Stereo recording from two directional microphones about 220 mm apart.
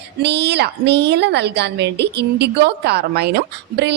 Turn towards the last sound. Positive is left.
turn(degrees=-50)  # may be behind; listen again after turning